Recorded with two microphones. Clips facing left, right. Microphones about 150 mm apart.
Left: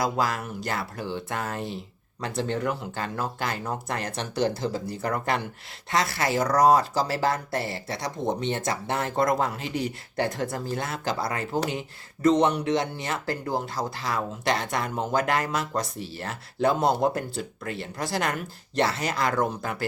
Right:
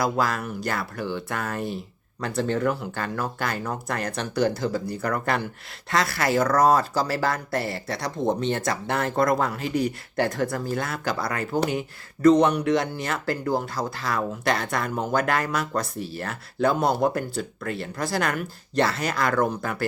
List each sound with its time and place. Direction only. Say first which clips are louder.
0.0 s speech: right 2 dB; 20° left (ahead or behind)